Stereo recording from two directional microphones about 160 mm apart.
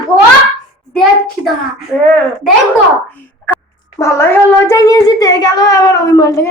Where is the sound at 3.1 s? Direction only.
10° left (ahead or behind).